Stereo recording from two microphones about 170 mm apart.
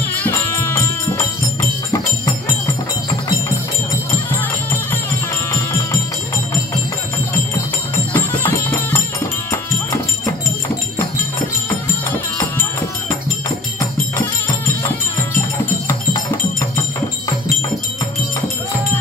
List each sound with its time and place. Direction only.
0.2 s music: 15° left (ahead or behind)
5.5 s music: 15° left (ahead or behind)
8.1 s music: 10° left (ahead or behind)